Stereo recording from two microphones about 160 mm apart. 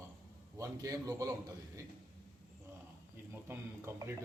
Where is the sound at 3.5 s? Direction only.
15° right (ahead or behind).